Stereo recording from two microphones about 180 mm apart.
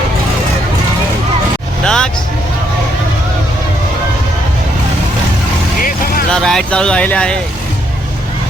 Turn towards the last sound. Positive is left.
turn(degrees=5)  # may be behind; listen again after turning